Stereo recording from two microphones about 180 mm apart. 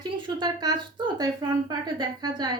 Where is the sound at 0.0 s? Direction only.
25° right (ahead or behind).